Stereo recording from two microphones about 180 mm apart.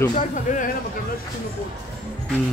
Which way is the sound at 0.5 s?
45° left (ahead or behind).